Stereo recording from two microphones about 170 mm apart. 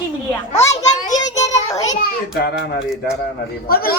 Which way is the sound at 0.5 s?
40° left (ahead or behind).